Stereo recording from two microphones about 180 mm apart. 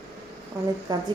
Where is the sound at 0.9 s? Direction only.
20° right (ahead or behind).